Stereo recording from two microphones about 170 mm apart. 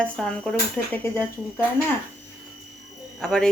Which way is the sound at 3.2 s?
5° left (ahead or behind).